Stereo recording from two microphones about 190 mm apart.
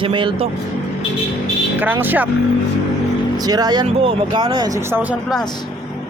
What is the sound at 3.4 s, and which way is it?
Speech, 20° right (ahead or behind).